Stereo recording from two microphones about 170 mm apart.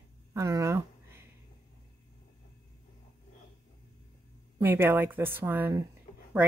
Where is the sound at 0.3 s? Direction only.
20° right (ahead or behind).